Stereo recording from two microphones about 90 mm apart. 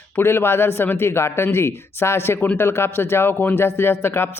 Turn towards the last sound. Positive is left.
turn(degrees=25)  # may be behind; listen again after turning